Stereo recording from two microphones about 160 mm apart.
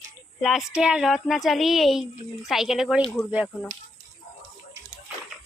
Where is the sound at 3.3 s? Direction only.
10° right (ahead or behind).